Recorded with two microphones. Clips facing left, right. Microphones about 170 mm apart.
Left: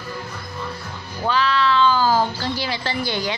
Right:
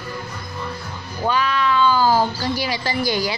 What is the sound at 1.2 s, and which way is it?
Speech, 15° right (ahead or behind).